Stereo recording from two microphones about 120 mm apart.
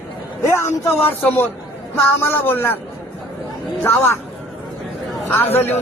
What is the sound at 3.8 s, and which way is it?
Speech, 20° left (ahead or behind).